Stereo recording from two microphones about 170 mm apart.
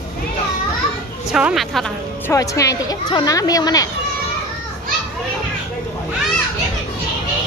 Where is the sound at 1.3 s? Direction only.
Centre (ahead or behind).